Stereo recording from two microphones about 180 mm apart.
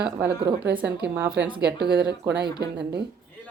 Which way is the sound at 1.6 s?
65° right (ahead or behind).